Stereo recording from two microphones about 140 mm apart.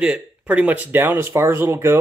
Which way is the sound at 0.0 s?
10° right (ahead or behind).